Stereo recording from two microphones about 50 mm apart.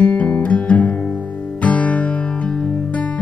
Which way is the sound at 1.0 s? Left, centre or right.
Left.